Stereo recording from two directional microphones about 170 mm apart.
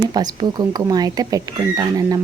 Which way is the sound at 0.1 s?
25° right (ahead or behind).